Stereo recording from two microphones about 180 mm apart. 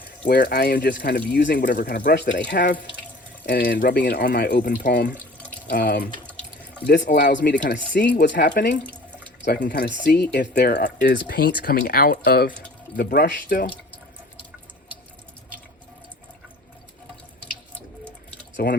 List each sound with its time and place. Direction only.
0.3 s speech: 60° left (ahead or behind)
2.5 s speech: 75° left (ahead or behind)
3.4 s speech: 60° left (ahead or behind)
5.2 s water: 10° left (ahead or behind)
5.6 s speech: 55° left (ahead or behind)
6.2 s water tap: 10° left (ahead or behind)
6.8 s speech: 70° left (ahead or behind)
8.1 s speech: 70° left (ahead or behind)
8.8 s water tap: 10° left (ahead or behind)
9.6 s speech: 60° left (ahead or behind)
12.1 s speech: 65° left (ahead or behind)
17.4 s sink: 10° left (ahead or behind)
18.5 s speech: 55° left (ahead or behind)